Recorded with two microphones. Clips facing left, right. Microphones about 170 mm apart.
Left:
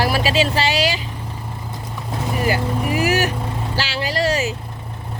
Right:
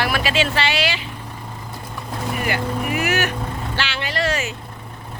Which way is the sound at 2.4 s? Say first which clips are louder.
Left 3 dB; 35° left (ahead or behind).